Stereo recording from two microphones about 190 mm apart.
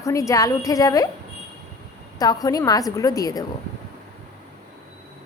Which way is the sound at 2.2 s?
20° left (ahead or behind).